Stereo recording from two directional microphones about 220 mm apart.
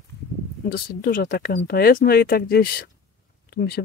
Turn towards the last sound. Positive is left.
turn(degrees=45)  # may be behind; listen again after turning